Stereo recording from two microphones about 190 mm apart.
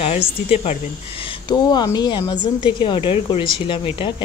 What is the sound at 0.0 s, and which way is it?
Speech, 35° left (ahead or behind).